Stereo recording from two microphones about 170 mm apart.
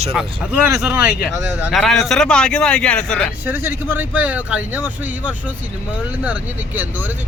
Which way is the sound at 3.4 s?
15° right (ahead or behind).